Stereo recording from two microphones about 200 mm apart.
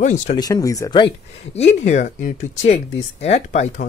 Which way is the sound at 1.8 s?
40° left (ahead or behind).